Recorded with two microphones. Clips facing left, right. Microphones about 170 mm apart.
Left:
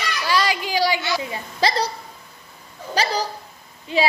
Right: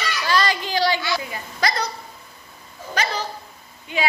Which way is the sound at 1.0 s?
25° left (ahead or behind).